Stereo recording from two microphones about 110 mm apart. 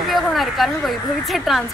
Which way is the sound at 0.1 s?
Centre (ahead or behind).